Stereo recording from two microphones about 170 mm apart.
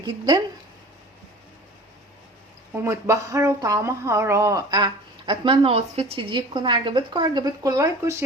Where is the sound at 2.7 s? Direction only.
15° right (ahead or behind).